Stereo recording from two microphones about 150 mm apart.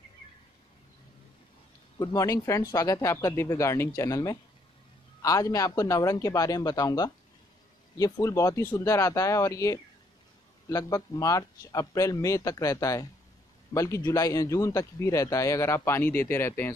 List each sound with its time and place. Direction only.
2.0 s a man's voice: 20° left (ahead or behind)